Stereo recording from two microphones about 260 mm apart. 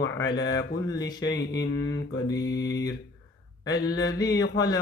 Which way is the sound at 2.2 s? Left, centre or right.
Centre.